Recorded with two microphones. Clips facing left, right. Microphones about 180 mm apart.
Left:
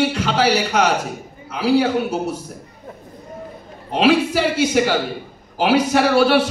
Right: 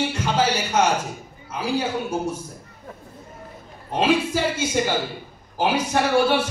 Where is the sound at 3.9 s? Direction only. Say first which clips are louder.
Left 5 dB; 80° left.